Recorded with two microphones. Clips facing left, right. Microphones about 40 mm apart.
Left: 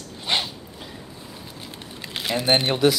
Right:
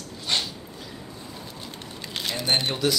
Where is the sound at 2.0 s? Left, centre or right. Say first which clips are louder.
Left 5 dB; centre.